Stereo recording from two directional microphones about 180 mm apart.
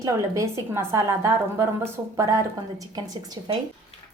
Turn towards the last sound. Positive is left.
turn(degrees=-30)  # may be behind; listen again after turning